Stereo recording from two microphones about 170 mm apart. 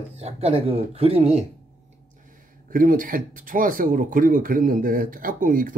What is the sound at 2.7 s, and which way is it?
Speech, 55° right (ahead or behind).